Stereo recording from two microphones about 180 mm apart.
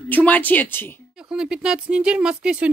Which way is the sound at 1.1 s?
5° right (ahead or behind).